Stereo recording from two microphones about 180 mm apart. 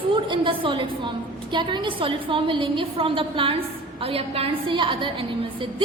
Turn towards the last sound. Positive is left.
turn(degrees=-30)  # may be behind; listen again after turning